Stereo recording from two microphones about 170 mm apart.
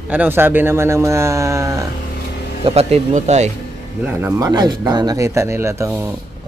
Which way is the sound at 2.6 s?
35° right (ahead or behind).